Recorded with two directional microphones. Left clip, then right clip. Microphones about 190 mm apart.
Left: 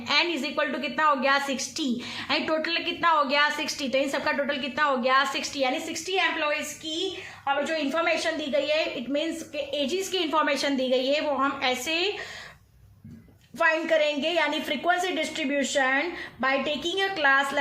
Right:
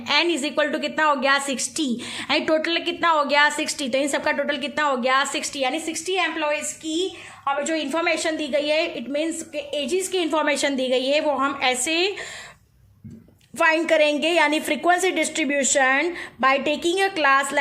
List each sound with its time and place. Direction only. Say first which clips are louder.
0.1 s a woman's voice: right 4 dB; 40° right (ahead or behind)
13.6 s a woman's voice: right 5 dB; 45° right (ahead or behind)